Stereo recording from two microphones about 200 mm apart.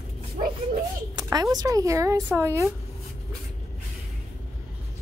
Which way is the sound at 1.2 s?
20° right (ahead or behind).